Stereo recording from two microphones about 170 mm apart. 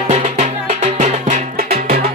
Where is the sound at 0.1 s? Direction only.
40° right (ahead or behind).